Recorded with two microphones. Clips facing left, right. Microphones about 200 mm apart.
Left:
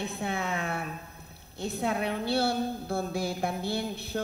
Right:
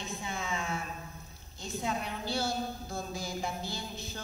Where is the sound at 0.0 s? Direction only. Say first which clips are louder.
Left 6 dB; 60° left (ahead or behind).